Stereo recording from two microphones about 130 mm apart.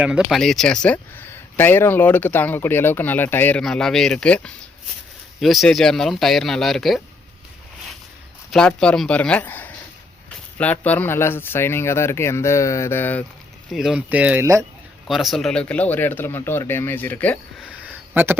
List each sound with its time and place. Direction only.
0.0 s speech: 5° right (ahead or behind); by 3.6 s 15° left (ahead or behind)
3.6 s speech: 5° left (ahead or behind)
8.4 s speech: 5° left (ahead or behind)
13.7 s speech: 5° right (ahead or behind)
15.0 s speech: centre (ahead or behind)
17.6 s a sound: 10° right (ahead or behind)